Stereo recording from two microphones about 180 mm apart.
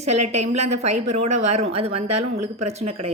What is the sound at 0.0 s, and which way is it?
A woman's voice, 35° right (ahead or behind).